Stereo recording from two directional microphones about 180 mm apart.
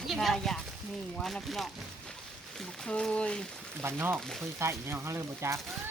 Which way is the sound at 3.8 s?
10° right (ahead or behind).